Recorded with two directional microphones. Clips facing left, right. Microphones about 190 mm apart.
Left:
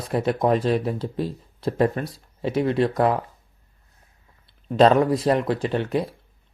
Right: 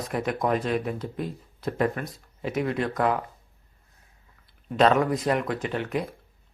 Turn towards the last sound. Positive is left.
turn(degrees=30)  # may be behind; listen again after turning